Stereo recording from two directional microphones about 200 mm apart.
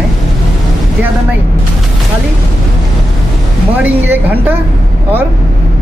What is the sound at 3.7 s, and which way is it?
Speech, 10° right (ahead or behind).